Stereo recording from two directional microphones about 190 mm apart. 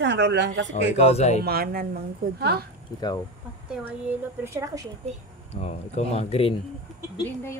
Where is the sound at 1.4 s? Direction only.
55° right (ahead or behind).